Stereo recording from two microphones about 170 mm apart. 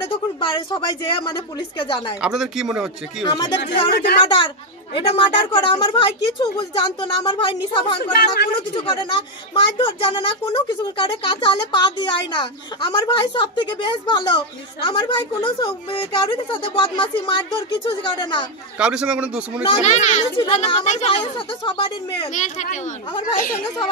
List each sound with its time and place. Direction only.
0.7 s speech: 30° left (ahead or behind)
2.2 s speech: 5° right (ahead or behind)
3.3 s speech: 25° left (ahead or behind)
3.9 s speech: 70° left (ahead or behind)
4.9 s speech: 30° left (ahead or behind)
8.0 s speech: 65° left (ahead or behind)
8.7 s speech: 30° left (ahead or behind)
18.8 s speech: 5° right (ahead or behind)
19.8 s a child's voice: 45° left (ahead or behind)
22.3 s a child's voice: 45° left (ahead or behind)